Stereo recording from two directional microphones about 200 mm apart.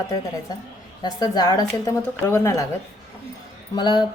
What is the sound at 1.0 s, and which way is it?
Speech, 20° left (ahead or behind).